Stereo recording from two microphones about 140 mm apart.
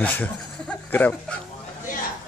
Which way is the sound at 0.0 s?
10° left (ahead or behind).